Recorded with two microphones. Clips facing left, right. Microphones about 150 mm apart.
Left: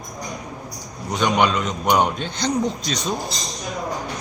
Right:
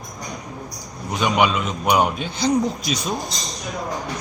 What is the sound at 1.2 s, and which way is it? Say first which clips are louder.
A man's voice: even; 5° right (ahead or behind).